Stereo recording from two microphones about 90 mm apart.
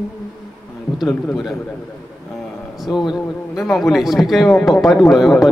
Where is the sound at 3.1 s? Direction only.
Centre (ahead or behind).